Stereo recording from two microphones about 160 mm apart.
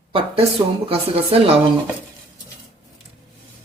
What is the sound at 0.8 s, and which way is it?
Speech, 35° right (ahead or behind).